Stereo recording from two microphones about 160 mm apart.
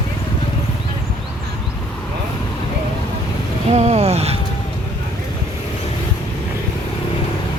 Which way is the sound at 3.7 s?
45° right (ahead or behind).